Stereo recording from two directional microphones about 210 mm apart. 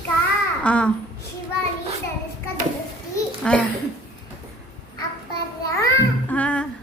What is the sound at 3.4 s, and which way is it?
Babbling, 5° left (ahead or behind).